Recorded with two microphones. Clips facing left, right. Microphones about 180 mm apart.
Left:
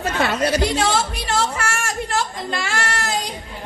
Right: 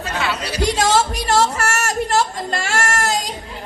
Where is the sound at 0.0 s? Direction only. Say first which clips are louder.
Left 4 dB; 50° left (ahead or behind).